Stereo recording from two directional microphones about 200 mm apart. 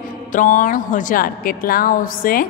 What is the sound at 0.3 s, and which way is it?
A woman's voice, 40° left (ahead or behind).